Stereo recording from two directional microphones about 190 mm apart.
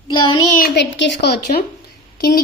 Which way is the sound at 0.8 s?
70° left (ahead or behind).